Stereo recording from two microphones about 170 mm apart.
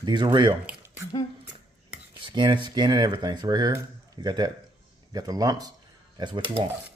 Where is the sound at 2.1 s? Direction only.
30° right (ahead or behind).